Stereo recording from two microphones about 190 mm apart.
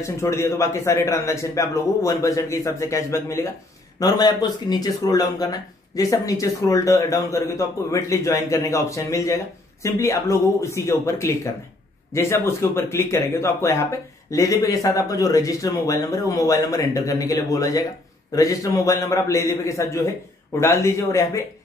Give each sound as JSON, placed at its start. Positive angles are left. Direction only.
{"t": 0.0, "sound": "a man's voice", "side_deg": 15}